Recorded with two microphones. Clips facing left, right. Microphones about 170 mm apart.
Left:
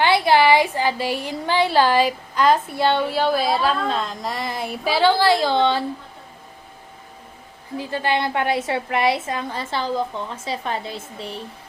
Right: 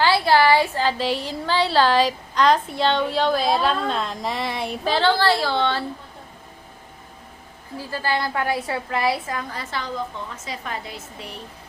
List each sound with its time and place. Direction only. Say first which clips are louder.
0.0 s a woman's voice: left 1 dB; 15° left (ahead or behind)
7.8 s a woman's voice: left 3 dB; 20° left (ahead or behind)